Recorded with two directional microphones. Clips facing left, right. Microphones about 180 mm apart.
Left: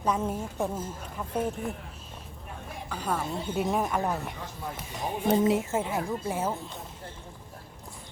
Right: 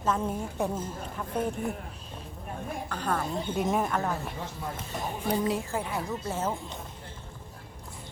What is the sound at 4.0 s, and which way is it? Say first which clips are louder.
Speech: left 1 dB; 20° left (ahead or behind).